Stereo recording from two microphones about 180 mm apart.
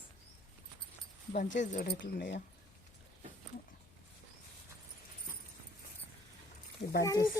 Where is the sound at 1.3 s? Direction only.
45° left (ahead or behind).